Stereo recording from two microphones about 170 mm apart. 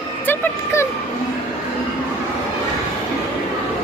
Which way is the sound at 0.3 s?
15° left (ahead or behind).